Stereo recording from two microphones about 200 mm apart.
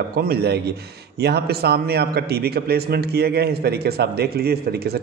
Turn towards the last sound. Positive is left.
turn(degrees=-50)  # may be behind; listen again after turning